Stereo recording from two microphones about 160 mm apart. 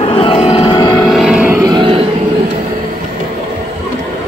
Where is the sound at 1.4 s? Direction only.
20° right (ahead or behind).